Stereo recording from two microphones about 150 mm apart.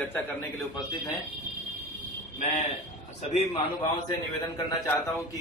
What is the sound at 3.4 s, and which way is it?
Speech, 40° left (ahead or behind).